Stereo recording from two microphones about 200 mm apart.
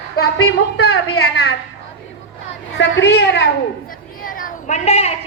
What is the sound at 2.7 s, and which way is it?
Speech, 60° left (ahead or behind).